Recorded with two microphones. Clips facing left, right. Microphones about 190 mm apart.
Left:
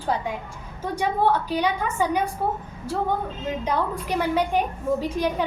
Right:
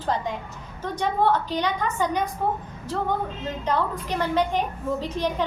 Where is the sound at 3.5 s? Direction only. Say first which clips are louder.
Left 1 dB; 10° left (ahead or behind).